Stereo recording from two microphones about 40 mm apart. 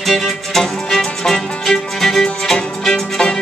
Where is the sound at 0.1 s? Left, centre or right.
Centre.